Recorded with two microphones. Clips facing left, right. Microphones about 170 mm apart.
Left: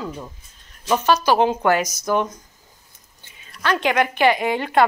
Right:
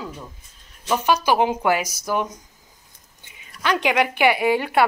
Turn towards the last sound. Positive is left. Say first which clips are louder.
# even
turn(degrees=-10)  # may be behind; listen again after turning